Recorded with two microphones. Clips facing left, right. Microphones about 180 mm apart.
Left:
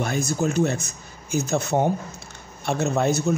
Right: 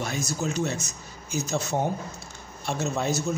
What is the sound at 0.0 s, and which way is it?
Speech, 55° left (ahead or behind).